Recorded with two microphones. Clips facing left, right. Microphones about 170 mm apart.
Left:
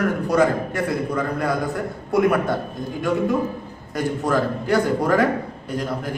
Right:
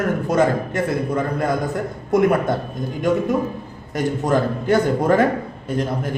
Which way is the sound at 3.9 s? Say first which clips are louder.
Right 2 dB; 20° right (ahead or behind).